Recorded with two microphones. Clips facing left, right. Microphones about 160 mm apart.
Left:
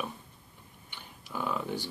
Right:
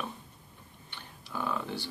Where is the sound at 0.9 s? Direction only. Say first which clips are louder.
Even; 15° left (ahead or behind).